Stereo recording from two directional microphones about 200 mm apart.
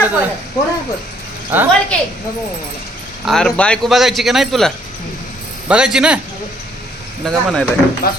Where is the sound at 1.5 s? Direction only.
10° right (ahead or behind).